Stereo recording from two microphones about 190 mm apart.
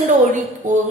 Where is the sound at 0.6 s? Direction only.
40° right (ahead or behind).